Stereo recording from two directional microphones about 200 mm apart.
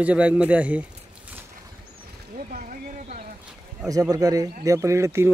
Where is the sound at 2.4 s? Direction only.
40° right (ahead or behind).